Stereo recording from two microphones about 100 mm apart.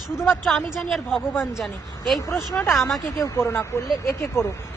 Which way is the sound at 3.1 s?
30° left (ahead or behind).